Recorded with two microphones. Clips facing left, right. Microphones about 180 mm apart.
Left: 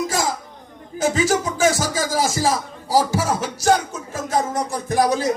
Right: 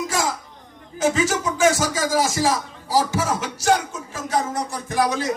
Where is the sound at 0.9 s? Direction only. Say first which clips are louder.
Left 1 dB; 35° left (ahead or behind).